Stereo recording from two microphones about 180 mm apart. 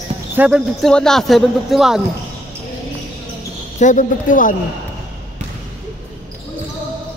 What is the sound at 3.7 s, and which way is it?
Speech, 45° left (ahead or behind).